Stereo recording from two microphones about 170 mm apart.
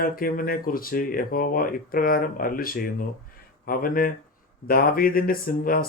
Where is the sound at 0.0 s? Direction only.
60° left (ahead or behind).